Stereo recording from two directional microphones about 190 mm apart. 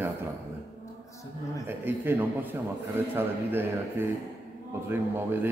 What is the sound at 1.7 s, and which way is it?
A man's voice, 10° right (ahead or behind).